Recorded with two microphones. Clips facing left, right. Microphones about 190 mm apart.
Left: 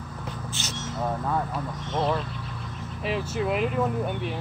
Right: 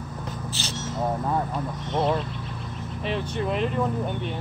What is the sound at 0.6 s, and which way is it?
Speech, 35° right (ahead or behind).